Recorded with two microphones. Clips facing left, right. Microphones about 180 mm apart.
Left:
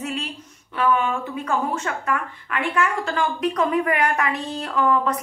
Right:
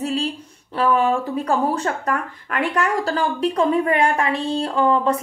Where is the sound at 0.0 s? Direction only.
30° right (ahead or behind).